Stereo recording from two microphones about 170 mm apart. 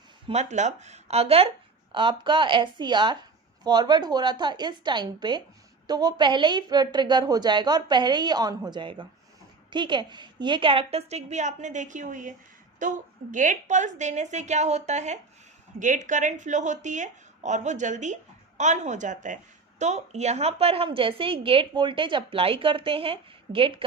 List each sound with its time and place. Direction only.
0.3 s a woman's voice: 40° right (ahead or behind)